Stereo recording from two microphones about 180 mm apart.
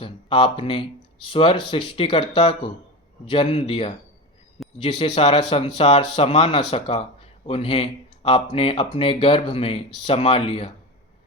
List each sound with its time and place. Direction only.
0.0 s speech: 30° left (ahead or behind)